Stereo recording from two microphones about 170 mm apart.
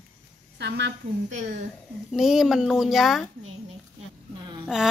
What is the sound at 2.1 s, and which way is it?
A woman's voice, centre (ahead or behind).